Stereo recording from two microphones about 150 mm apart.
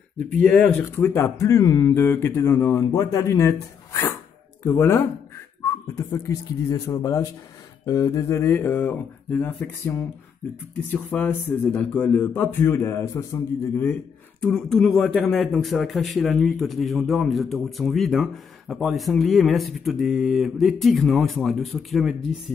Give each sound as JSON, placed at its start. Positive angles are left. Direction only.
{"t": 0.4, "sound": "speech", "side_deg": 10}
{"t": 14.4, "sound": "a man's voice", "side_deg": 5}